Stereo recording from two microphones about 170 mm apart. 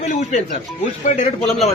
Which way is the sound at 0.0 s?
45° left (ahead or behind).